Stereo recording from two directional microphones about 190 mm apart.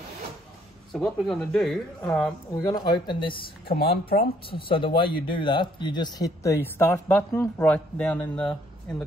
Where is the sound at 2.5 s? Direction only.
20° left (ahead or behind).